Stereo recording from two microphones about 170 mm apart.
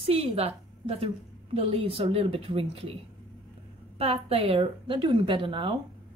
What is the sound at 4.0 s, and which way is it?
A woman's voice, 35° right (ahead or behind).